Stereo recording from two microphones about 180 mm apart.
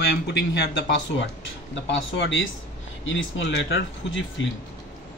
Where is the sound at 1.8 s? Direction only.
75° left (ahead or behind).